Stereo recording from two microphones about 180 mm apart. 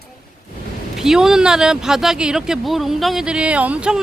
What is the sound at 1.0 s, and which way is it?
Speech, 5° right (ahead or behind).